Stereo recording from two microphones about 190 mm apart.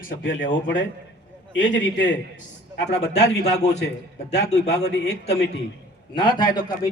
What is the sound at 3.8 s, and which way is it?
A man's voice, 60° left (ahead or behind).